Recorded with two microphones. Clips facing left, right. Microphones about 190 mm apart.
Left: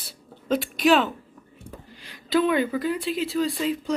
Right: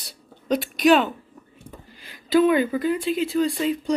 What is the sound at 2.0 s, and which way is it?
Speech, centre (ahead or behind).